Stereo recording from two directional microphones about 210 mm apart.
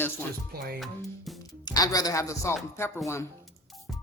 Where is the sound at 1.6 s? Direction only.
20° left (ahead or behind).